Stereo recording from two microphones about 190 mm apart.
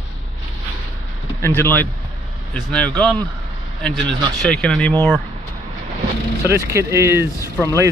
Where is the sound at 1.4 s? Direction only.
10° left (ahead or behind).